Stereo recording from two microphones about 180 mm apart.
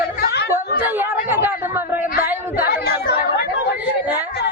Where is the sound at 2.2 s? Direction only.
10° right (ahead or behind).